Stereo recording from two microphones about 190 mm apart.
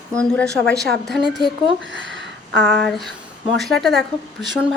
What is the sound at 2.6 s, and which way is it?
A woman's voice, centre (ahead or behind).